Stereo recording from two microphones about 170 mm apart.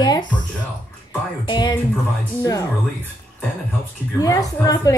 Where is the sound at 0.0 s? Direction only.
25° left (ahead or behind).